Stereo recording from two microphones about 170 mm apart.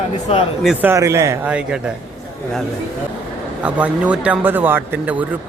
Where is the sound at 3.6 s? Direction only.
5° right (ahead or behind).